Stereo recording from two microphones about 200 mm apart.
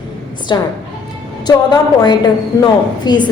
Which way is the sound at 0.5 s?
20° left (ahead or behind).